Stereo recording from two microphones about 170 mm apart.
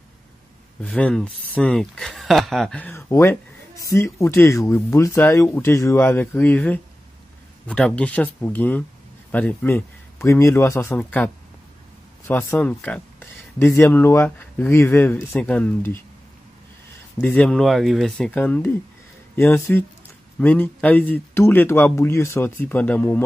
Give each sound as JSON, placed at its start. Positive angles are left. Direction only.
{"t": 0.8, "sound": "speech", "side_deg": 5}
{"t": 12.3, "sound": "speech", "side_deg": 10}
{"t": 17.2, "sound": "speech", "side_deg": 10}